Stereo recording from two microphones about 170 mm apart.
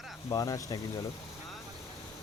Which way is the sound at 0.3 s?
20° left (ahead or behind).